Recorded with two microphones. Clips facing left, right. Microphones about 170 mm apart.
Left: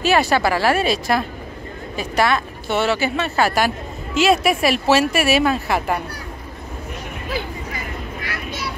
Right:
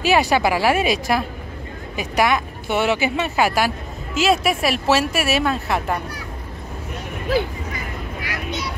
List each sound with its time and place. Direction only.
0.0 s a woman's voice: 15° right (ahead or behind); by 5.9 s 5° left (ahead or behind)
8.3 s vehicle: 20° right (ahead or behind)